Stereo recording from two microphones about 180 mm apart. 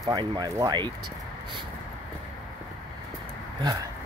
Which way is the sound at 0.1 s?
25° right (ahead or behind).